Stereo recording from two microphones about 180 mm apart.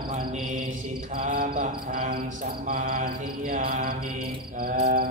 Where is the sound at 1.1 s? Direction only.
50° right (ahead or behind).